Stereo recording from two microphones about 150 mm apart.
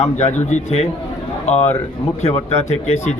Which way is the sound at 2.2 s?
45° left (ahead or behind).